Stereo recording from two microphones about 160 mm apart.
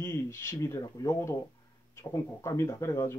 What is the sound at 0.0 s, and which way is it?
Speech, 15° left (ahead or behind).